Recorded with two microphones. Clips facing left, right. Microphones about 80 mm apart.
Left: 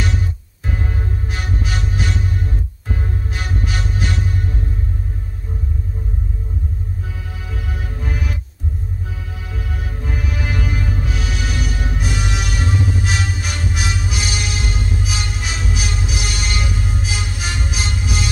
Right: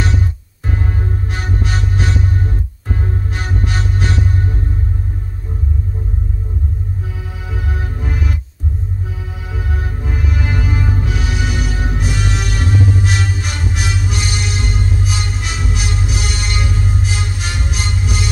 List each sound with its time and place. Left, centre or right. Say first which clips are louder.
0.7 s music: right 3 dB; centre
7.5 s music: right 4 dB; centre
9.9 s music: right 2 dB; centre
10.7 s music: right 4 dB; right
11.0 s music: right 3 dB; centre